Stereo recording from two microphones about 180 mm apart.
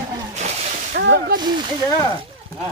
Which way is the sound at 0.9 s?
60° right (ahead or behind).